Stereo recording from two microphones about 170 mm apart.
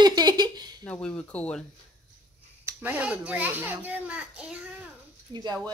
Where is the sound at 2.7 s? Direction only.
10° right (ahead or behind).